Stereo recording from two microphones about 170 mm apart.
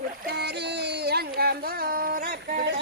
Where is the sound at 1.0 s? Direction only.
65° right (ahead or behind).